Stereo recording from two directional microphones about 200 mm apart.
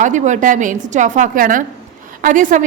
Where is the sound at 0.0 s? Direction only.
40° right (ahead or behind).